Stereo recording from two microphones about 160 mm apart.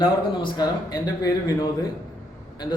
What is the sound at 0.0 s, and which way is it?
A man's voice, 25° left (ahead or behind).